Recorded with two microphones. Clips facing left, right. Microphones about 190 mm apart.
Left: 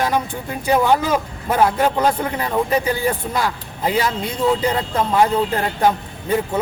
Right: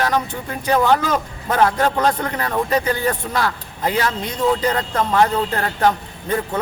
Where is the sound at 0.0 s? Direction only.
10° left (ahead or behind).